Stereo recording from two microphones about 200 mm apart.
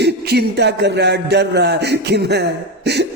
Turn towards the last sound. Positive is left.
turn(degrees=-55)  # may be behind; listen again after turning